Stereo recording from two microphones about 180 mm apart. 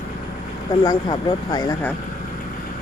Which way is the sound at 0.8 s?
20° left (ahead or behind).